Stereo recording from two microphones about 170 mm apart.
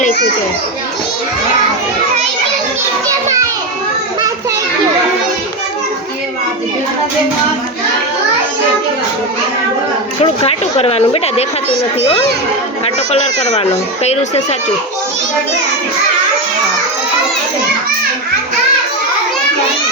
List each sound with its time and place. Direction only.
10.4 s speech: 35° left (ahead or behind)
12.8 s speech: 35° left (ahead or behind)